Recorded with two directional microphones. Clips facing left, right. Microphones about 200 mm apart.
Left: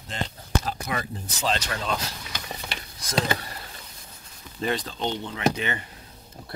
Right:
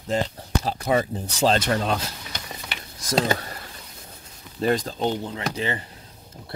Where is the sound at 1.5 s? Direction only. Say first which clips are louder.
Right 7 dB; 55° right (ahead or behind).